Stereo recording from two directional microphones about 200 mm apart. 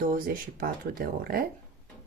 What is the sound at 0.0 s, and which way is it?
Speech, 45° right (ahead or behind).